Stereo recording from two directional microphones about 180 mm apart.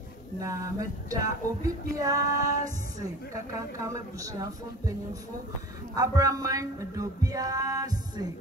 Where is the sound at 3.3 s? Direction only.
20° right (ahead or behind).